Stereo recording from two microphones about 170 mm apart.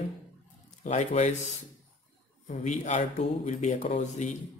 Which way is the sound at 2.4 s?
45° left (ahead or behind).